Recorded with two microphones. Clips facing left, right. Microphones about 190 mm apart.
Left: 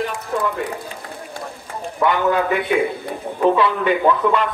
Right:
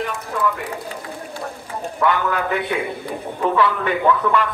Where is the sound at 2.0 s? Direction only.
20° left (ahead or behind).